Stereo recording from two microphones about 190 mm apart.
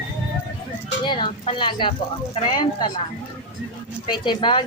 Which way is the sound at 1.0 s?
25° left (ahead or behind).